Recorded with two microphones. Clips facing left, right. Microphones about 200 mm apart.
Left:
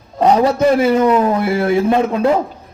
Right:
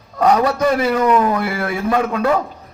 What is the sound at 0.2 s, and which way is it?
A man's voice, 25° left (ahead or behind).